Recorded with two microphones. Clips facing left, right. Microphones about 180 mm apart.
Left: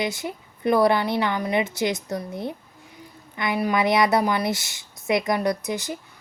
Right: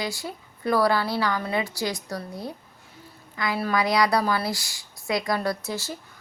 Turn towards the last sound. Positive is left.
turn(degrees=20)  # may be behind; listen again after turning